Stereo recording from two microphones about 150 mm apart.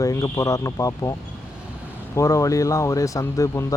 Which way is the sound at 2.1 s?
20° left (ahead or behind).